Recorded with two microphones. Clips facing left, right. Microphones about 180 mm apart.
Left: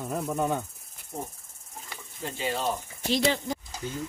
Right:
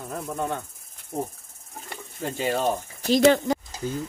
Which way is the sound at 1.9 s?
50° right (ahead or behind).